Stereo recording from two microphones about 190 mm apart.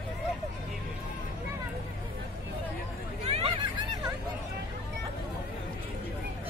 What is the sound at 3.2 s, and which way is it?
Hubbub, 30° right (ahead or behind).